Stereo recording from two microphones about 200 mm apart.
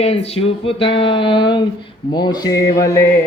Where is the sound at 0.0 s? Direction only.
30° left (ahead or behind).